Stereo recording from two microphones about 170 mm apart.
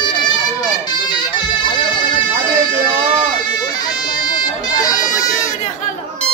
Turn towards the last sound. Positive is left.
turn(degrees=20)  # may be behind; listen again after turning